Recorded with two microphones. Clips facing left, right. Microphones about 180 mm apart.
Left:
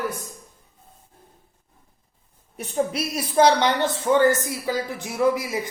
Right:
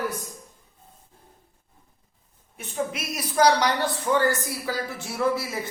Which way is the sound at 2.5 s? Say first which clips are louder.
Left 5 dB; 35° left (ahead or behind).